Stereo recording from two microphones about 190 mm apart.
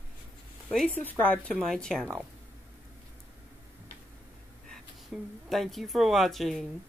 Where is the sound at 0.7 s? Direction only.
5° left (ahead or behind).